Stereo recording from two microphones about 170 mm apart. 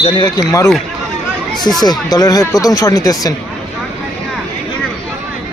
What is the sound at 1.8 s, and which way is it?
Speech, 20° left (ahead or behind).